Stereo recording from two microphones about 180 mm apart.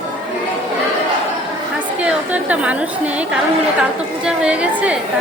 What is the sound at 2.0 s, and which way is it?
Speech, 5° right (ahead or behind).